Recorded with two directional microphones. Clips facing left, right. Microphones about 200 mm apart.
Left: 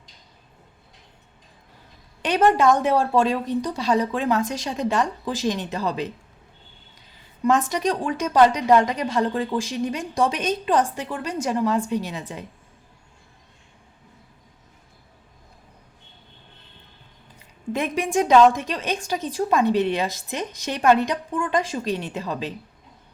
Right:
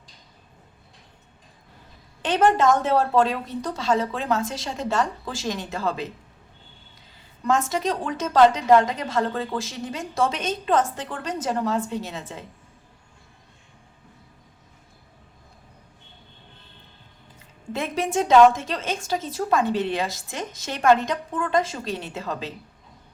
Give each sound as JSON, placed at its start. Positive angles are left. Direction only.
{"t": 2.2, "sound": "a woman's voice", "side_deg": 15}
{"t": 7.4, "sound": "a woman's voice", "side_deg": 15}
{"t": 17.7, "sound": "a woman's voice", "side_deg": 15}